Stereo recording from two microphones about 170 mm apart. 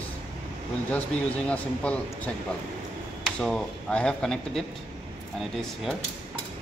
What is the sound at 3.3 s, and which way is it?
Speech, 5° left (ahead or behind).